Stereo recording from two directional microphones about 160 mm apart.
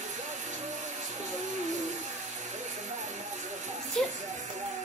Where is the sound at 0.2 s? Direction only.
50° right (ahead or behind).